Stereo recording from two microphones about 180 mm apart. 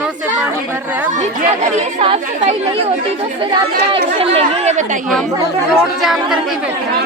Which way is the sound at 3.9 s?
30° right (ahead or behind).